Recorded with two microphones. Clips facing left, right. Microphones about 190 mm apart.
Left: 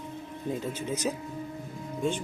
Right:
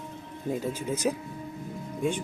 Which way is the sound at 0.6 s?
10° right (ahead or behind).